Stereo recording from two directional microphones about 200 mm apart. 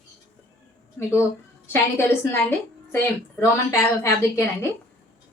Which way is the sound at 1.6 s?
10° left (ahead or behind).